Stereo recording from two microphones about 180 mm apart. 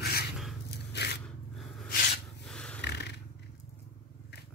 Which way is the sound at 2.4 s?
5° left (ahead or behind).